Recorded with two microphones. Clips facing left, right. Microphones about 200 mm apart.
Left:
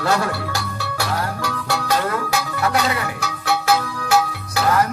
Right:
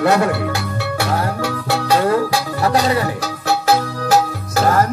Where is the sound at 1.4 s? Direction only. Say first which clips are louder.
Right 4 dB; 30° right (ahead or behind).